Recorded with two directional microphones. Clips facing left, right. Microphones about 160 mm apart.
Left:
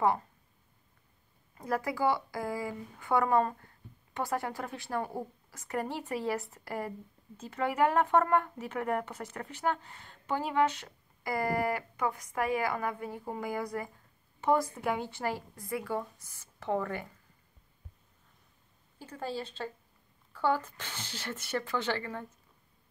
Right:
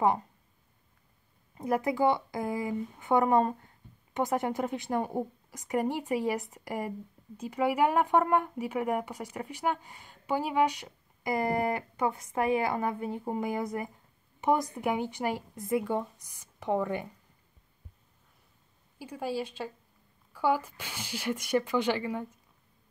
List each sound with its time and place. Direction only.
1.6 s speech: 20° right (ahead or behind)
18.9 s speech: 10° right (ahead or behind)